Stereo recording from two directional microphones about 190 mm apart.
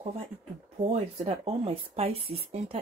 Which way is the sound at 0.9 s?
35° right (ahead or behind).